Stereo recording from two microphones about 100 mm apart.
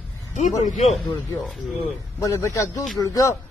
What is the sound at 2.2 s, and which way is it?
Speech, 30° left (ahead or behind).